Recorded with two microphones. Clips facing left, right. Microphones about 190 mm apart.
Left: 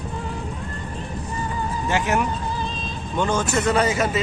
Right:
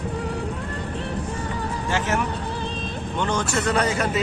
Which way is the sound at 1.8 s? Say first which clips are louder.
Left 3 dB; 15° left (ahead or behind).